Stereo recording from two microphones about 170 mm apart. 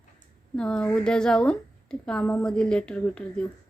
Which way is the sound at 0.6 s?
5° left (ahead or behind).